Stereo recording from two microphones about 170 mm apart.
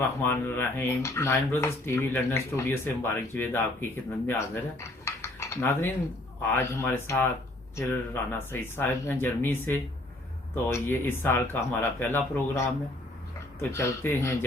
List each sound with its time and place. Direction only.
0.2 s speech: 10° left (ahead or behind)